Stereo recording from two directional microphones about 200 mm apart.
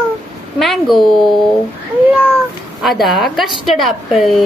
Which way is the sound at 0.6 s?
Centre (ahead or behind).